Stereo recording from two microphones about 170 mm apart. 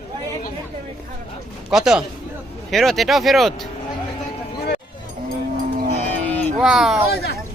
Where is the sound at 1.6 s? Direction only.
5° right (ahead or behind).